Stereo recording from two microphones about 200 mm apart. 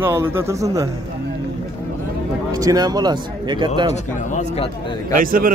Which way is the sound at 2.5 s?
15° right (ahead or behind).